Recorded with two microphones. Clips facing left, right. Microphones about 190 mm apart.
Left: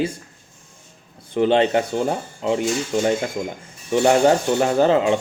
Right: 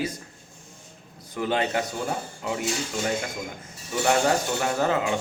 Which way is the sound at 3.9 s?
30° left (ahead or behind).